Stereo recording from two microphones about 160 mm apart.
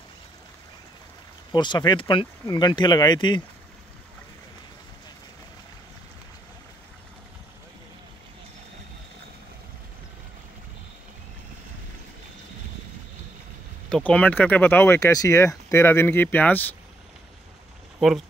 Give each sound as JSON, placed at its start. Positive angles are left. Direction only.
{"t": 1.5, "sound": "speech", "side_deg": 25}
{"t": 13.8, "sound": "speech", "side_deg": 5}
{"t": 18.0, "sound": "speech", "side_deg": 0}